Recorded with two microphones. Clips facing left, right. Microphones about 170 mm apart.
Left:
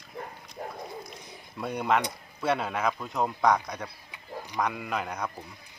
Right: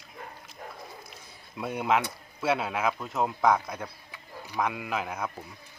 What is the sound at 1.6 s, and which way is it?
A man's voice, 5° right (ahead or behind).